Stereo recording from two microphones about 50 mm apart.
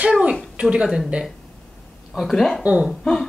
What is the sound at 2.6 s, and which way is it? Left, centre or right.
Speech, right.